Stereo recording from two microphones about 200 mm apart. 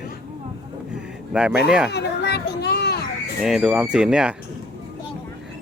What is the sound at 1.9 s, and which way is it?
Children playing, 55° left (ahead or behind).